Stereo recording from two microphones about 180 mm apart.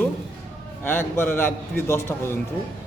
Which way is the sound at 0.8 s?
10° left (ahead or behind).